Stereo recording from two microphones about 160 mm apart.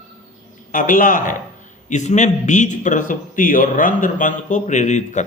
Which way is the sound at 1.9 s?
45° left (ahead or behind).